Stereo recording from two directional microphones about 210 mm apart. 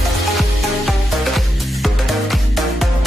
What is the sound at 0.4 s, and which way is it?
Music, centre (ahead or behind).